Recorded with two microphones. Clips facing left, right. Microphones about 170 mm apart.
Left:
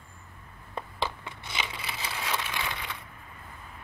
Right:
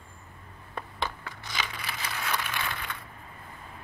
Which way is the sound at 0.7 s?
25° left (ahead or behind).